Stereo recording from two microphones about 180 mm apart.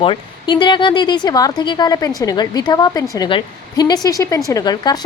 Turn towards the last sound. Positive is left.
turn(degrees=20)  # may be behind; listen again after turning